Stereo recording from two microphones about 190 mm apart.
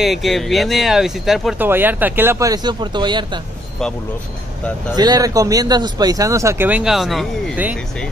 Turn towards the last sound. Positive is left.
turn(degrees=-5)  # may be behind; listen again after turning